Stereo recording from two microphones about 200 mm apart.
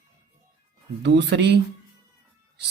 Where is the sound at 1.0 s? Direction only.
60° right (ahead or behind).